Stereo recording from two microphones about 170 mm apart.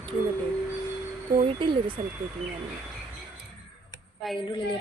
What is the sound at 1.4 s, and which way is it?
Speech, 30° right (ahead or behind).